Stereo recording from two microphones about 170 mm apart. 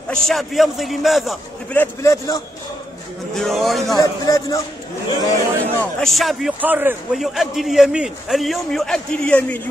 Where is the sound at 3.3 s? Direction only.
Centre (ahead or behind).